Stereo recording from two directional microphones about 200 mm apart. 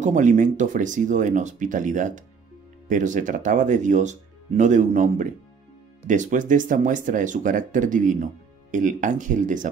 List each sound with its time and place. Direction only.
0.0 s speech: 40° right (ahead or behind)